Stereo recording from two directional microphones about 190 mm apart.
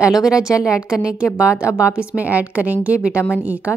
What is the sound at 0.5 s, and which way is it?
Speech, 15° left (ahead or behind).